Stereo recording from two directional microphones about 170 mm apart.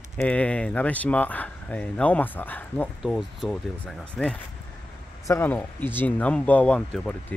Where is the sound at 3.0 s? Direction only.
Centre (ahead or behind).